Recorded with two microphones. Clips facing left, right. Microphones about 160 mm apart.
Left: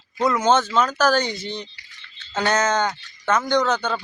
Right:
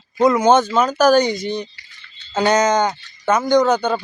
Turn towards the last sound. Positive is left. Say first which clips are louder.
# right 6 dB
turn(degrees=-15)  # may be behind; listen again after turning